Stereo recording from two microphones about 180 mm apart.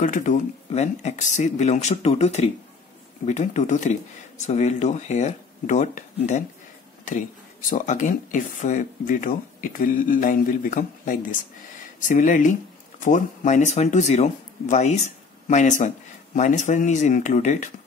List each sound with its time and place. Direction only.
0.0 s speech: 45° left (ahead or behind)
7.7 s speech: 45° left (ahead or behind)